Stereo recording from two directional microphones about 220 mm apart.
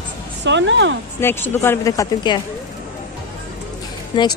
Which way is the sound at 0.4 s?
55° right (ahead or behind).